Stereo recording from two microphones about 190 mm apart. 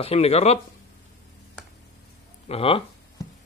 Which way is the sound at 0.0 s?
35° left (ahead or behind).